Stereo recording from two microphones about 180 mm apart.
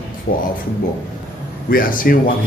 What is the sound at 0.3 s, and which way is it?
Speech, 55° left (ahead or behind).